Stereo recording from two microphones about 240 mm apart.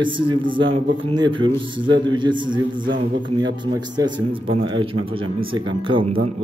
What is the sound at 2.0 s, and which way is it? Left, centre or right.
Speech, centre.